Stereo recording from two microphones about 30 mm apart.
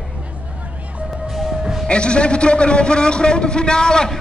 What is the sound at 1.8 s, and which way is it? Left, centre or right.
A man's voice, left.